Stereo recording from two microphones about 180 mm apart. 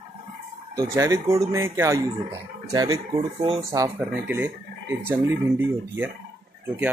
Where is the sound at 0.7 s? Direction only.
20° right (ahead or behind).